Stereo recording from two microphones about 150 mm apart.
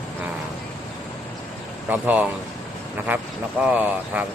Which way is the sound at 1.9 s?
10° right (ahead or behind).